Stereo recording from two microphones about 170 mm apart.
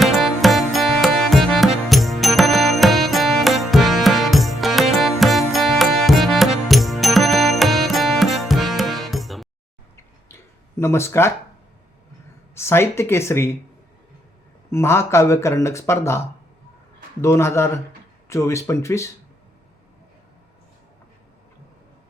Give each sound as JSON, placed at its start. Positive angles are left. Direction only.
{"t": 0.0, "sound": "music", "side_deg": 0}
{"t": 10.2, "sound": "a sound", "side_deg": 15}
{"t": 12.5, "sound": "speech", "side_deg": 15}
{"t": 14.7, "sound": "speech", "side_deg": 15}